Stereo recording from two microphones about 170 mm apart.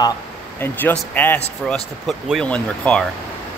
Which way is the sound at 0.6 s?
10° left (ahead or behind).